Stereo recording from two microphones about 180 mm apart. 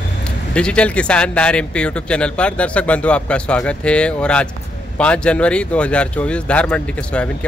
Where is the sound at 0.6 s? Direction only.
5° left (ahead or behind).